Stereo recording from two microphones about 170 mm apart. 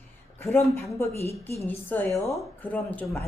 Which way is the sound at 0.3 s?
15° left (ahead or behind).